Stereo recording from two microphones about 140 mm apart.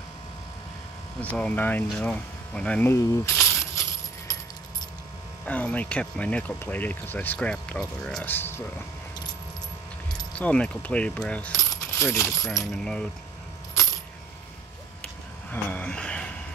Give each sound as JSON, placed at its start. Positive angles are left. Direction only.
{"t": 1.2, "sound": "speech", "side_deg": 10}
{"t": 5.4, "sound": "speech", "side_deg": 10}
{"t": 10.3, "sound": "speech", "side_deg": 10}
{"t": 11.7, "sound": "coin", "side_deg": 20}
{"t": 12.3, "sound": "coin", "side_deg": 0}
{"t": 15.5, "sound": "a sound", "side_deg": 10}